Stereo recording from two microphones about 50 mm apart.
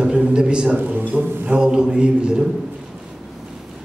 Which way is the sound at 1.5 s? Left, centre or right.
Centre.